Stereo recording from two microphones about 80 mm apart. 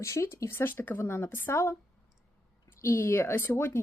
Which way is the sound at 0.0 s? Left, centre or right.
Left.